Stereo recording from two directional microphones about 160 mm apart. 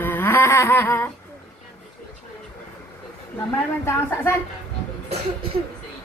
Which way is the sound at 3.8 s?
15° left (ahead or behind).